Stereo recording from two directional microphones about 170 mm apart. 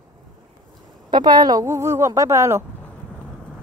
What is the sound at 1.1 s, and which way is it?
Speech, 25° right (ahead or behind).